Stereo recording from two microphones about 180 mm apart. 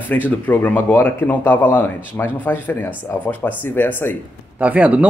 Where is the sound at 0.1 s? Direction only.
10° left (ahead or behind).